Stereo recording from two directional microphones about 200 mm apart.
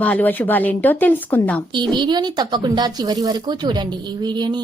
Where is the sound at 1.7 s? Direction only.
20° right (ahead or behind).